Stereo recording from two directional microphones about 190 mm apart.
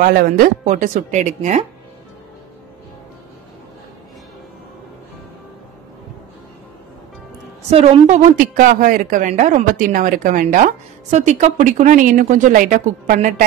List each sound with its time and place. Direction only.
0.0 s a woman's voice: 50° right (ahead or behind)
7.7 s a woman's voice: 35° right (ahead or behind)